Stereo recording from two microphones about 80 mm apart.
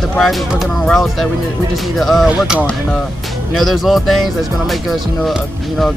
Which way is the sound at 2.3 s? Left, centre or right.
Centre.